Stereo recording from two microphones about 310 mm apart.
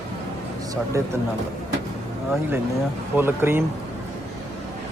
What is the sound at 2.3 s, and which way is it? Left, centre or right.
Speech, centre.